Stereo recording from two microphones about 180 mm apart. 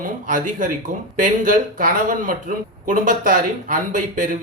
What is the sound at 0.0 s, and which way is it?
Speech, 45° right (ahead or behind).